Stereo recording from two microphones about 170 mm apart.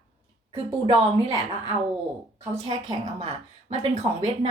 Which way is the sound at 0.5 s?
35° right (ahead or behind).